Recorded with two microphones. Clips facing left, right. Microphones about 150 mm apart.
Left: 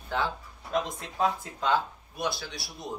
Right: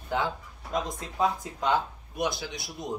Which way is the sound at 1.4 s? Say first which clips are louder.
Even; 15° right (ahead or behind).